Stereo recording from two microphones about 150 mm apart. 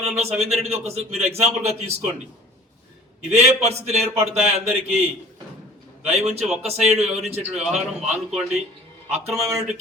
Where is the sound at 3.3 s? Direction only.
45° right (ahead or behind).